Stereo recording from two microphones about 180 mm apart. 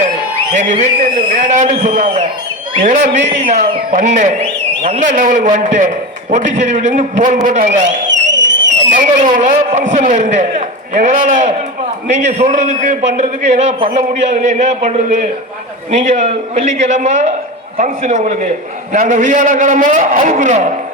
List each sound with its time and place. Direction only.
0.5 s a man's voice: 40° right (ahead or behind)
8.3 s a sound: 85° right
9.0 s a man's voice: 45° right (ahead or behind)